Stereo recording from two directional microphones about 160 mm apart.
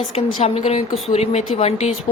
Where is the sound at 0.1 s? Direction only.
40° left (ahead or behind).